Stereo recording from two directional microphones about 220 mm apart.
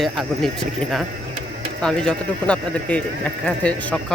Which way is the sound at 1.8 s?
5° left (ahead or behind).